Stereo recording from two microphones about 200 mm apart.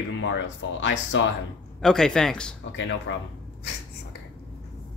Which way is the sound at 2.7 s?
65° left (ahead or behind).